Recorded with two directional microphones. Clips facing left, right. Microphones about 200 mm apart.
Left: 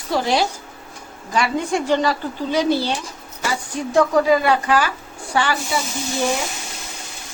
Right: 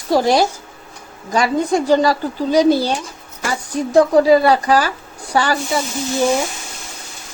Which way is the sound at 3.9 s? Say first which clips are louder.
Right 5 dB; 35° right (ahead or behind).